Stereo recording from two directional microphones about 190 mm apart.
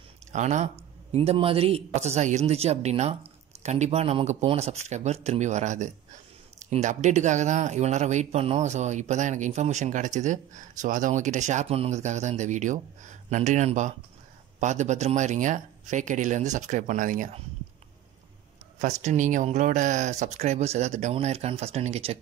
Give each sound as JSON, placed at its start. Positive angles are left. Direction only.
{"t": 0.3, "sound": "speech", "side_deg": -40}
{"t": 18.8, "sound": "speech", "side_deg": -40}